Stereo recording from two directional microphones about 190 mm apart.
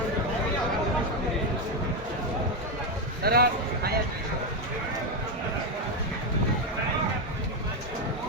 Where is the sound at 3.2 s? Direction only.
55° right (ahead or behind).